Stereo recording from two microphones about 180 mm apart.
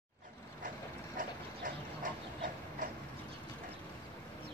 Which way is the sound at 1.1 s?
50° right (ahead or behind).